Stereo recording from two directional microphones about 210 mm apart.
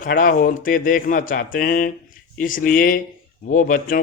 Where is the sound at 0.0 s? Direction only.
40° left (ahead or behind).